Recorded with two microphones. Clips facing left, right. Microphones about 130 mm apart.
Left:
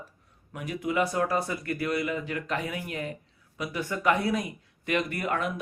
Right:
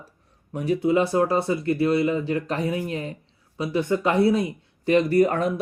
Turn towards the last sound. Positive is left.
turn(degrees=-35)  # may be behind; listen again after turning